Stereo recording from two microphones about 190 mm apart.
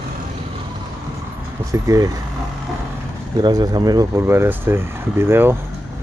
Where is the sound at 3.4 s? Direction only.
20° right (ahead or behind).